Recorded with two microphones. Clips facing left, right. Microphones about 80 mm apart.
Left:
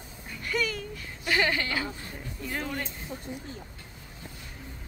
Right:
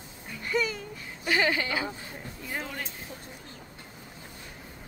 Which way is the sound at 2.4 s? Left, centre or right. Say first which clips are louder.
Left 3 dB; centre.